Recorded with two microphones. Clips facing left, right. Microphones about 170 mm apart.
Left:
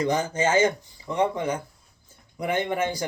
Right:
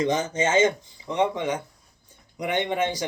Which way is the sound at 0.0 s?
20° right (ahead or behind).